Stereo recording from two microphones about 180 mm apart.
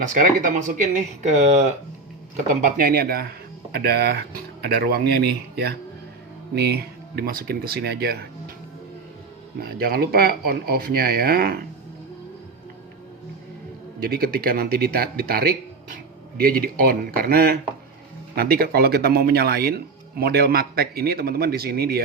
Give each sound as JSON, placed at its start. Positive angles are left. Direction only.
{"t": 0.1, "sound": "speech", "side_deg": -45}
{"t": 9.6, "sound": "speech", "side_deg": -55}
{"t": 14.0, "sound": "speech", "side_deg": -55}